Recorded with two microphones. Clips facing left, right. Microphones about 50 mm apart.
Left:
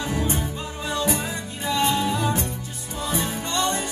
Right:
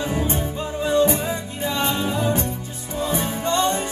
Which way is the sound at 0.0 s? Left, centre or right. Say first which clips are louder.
Right 2 dB; right.